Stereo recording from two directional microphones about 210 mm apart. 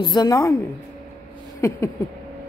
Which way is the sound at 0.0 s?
20° left (ahead or behind).